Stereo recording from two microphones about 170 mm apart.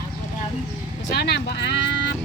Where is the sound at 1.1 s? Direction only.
80° left.